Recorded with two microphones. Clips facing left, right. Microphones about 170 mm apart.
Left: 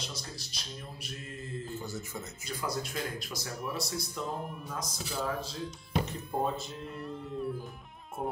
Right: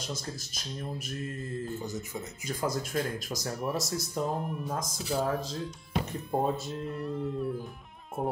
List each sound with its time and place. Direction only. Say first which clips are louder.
0.0 s speech: right 5 dB; 50° right (ahead or behind)
1.8 s speech: right 3 dB; 20° right (ahead or behind)
2.4 s speech: right 4 dB; 45° right (ahead or behind)
4.3 s speech: right 4 dB; centre (ahead or behind)
4.6 s speech: right 6 dB; 45° right (ahead or behind)
6.3 s speech: right 4 dB; centre (ahead or behind)